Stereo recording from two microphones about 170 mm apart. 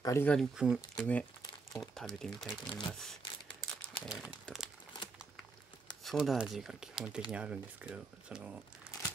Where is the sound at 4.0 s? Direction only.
5° left (ahead or behind).